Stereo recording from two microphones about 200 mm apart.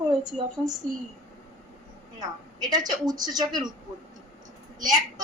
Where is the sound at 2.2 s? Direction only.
20° right (ahead or behind).